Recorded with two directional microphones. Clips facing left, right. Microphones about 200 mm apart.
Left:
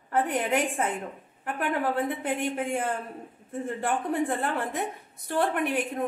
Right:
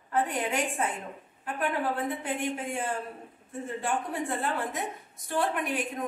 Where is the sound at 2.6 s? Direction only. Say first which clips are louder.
Left 4 dB; 60° left (ahead or behind).